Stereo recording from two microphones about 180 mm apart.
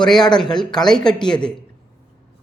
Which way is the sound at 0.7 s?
25° left (ahead or behind).